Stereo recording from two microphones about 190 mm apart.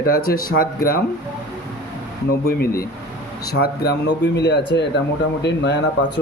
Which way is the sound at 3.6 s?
60° left (ahead or behind).